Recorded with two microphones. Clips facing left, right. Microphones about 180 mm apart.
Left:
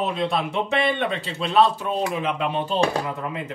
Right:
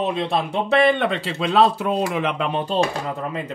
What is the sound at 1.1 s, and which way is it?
Speech, 85° right.